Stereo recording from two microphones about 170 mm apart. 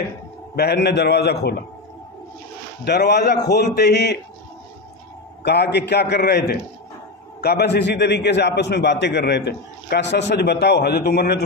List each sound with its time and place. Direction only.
0.6 s a man's voice: 75° left (ahead or behind)
2.8 s a man's voice: 75° left (ahead or behind)
5.4 s a man's voice: 80° left